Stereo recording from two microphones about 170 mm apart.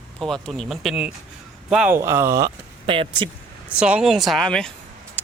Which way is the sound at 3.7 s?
5° right (ahead or behind).